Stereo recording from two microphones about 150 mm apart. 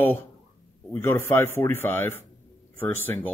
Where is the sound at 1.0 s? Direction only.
15° left (ahead or behind).